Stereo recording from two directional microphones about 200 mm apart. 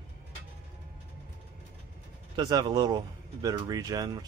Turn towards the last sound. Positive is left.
turn(degrees=-20)  # may be behind; listen again after turning